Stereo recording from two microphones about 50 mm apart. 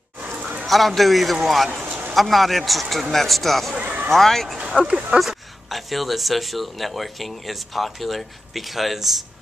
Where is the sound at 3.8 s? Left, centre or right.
Right.